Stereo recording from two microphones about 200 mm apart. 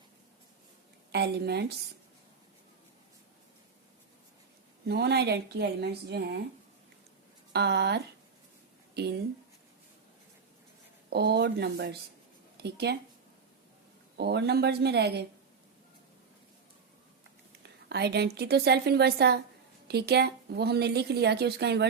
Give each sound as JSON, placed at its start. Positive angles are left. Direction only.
{"t": 1.1, "sound": "a woman's voice", "side_deg": -55}
{"t": 4.9, "sound": "a woman's voice", "side_deg": -55}
{"t": 7.5, "sound": "a woman's voice", "side_deg": -55}
{"t": 11.1, "sound": "a woman's voice", "side_deg": -55}
{"t": 14.2, "sound": "a woman's voice", "side_deg": -55}
{"t": 17.6, "sound": "a sound", "side_deg": -55}
{"t": 18.3, "sound": "a woman's voice", "side_deg": -55}